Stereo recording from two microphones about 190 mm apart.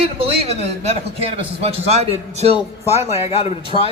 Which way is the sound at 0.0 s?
30° right (ahead or behind).